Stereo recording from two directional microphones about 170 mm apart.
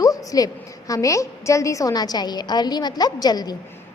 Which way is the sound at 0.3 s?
20° left (ahead or behind).